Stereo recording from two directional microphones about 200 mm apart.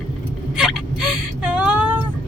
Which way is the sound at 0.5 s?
5° right (ahead or behind).